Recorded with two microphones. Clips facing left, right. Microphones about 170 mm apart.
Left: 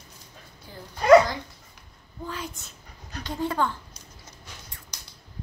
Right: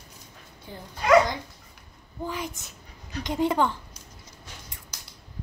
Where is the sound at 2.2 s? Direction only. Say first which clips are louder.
Right 3 dB; 15° right (ahead or behind).